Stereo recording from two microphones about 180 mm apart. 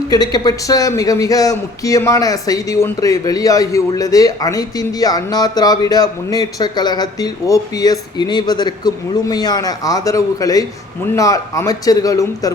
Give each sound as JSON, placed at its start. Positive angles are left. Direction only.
{"t": 0.1, "sound": "a man's voice", "side_deg": 20}